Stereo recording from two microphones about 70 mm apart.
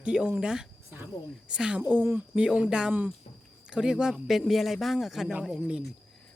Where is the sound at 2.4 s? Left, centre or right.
Centre.